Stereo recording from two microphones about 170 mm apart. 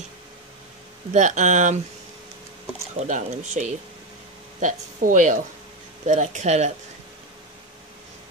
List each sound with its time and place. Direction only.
1.1 s speech: 45° right (ahead or behind)
3.1 s speech: 45° right (ahead or behind)